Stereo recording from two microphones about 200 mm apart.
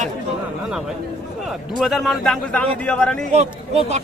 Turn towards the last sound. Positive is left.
turn(degrees=-35)  # may be behind; listen again after turning